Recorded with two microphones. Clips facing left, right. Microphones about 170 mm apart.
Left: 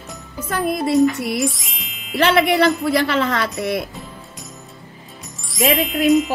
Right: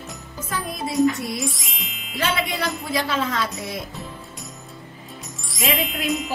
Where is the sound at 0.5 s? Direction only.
65° left (ahead or behind).